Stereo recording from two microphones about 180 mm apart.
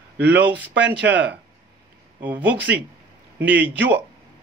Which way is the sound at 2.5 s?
75° right (ahead or behind).